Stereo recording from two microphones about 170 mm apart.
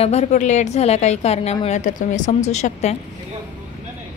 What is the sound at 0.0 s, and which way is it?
A woman's voice, 40° left (ahead or behind).